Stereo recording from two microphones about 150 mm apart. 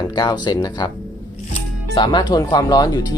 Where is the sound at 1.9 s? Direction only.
30° left (ahead or behind).